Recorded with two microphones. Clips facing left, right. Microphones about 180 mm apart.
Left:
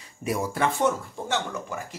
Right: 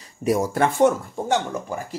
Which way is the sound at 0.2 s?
40° right (ahead or behind).